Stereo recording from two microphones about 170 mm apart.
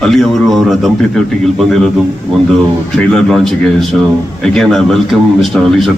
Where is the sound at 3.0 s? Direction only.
5° left (ahead or behind).